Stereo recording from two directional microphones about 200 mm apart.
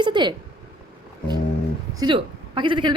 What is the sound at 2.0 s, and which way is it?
Speech, 25° right (ahead or behind).